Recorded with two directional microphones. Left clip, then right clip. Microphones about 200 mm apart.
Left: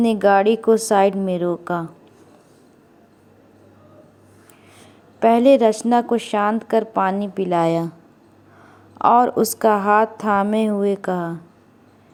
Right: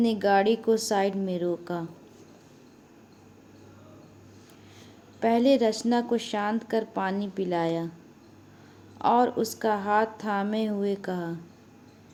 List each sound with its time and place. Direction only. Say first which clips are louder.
0.0 s a woman's voice: left 8 dB; 30° left (ahead or behind)
5.2 s a woman's voice: left 9 dB; 30° left (ahead or behind)
7.6 s speech: left 11 dB; 45° left (ahead or behind)
9.0 s a woman's voice: left 8 dB; 35° left (ahead or behind)